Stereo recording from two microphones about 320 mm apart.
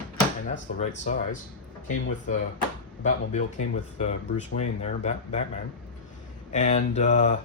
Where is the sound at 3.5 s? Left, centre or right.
Left.